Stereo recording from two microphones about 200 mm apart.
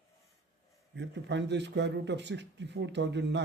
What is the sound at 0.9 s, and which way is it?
A man's voice, 60° right (ahead or behind).